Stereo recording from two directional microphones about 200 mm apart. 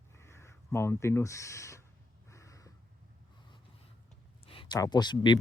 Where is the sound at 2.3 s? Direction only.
15° left (ahead or behind).